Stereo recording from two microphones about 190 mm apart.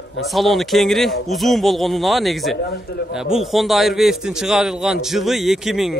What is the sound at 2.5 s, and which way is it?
Speech, 60° left (ahead or behind).